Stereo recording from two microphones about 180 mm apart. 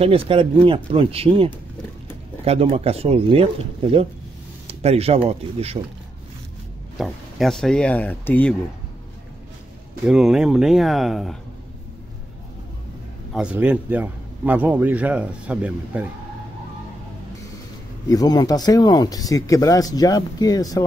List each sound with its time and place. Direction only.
0.0 s speech: 30° right (ahead or behind)
4.6 s speech: 35° right (ahead or behind)
7.0 s speech: centre (ahead or behind)
10.0 s speech: 5° right (ahead or behind)
13.3 s a man's voice: 5° right (ahead or behind)
18.0 s speech: 20° left (ahead or behind)